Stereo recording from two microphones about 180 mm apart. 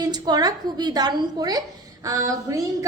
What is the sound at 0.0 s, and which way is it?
A woman's voice, 20° right (ahead or behind).